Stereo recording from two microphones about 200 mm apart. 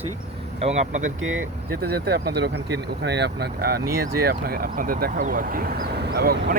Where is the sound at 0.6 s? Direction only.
40° right (ahead or behind).